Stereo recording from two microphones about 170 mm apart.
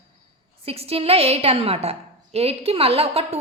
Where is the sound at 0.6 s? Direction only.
35° right (ahead or behind).